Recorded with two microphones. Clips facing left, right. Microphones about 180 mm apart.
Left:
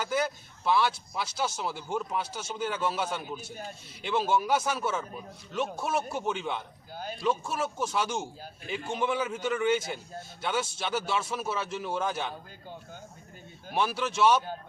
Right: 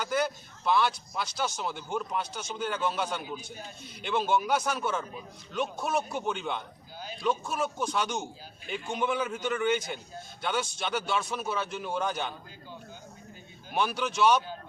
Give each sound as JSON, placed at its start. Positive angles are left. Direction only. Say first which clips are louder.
{"t": 0.0, "sound": "speech", "louder": "even", "side_deg": 5}
{"t": 6.9, "sound": "a sound", "louder": "left 4 dB", "side_deg": 50}
{"t": 7.2, "sound": "speech", "louder": "even", "side_deg": 5}
{"t": 13.7, "sound": "speech", "louder": "even", "side_deg": 0}